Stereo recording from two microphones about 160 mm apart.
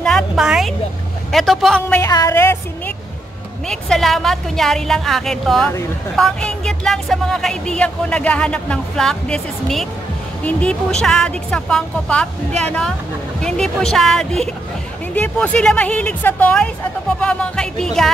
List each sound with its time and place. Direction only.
0.0 s a woman's voice: centre (ahead or behind)
2.0 s speech: 20° left (ahead or behind)
3.6 s speech: 5° left (ahead or behind)